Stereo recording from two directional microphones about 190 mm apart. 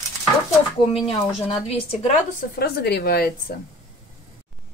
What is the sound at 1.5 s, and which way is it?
Speech, 35° left (ahead or behind).